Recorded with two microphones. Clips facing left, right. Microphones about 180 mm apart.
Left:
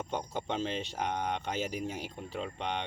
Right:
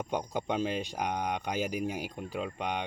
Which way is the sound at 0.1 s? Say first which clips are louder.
Right 4 dB; 10° right (ahead or behind).